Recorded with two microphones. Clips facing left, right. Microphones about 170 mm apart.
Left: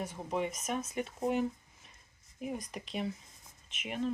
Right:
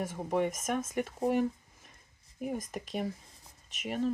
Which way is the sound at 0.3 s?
50° right (ahead or behind).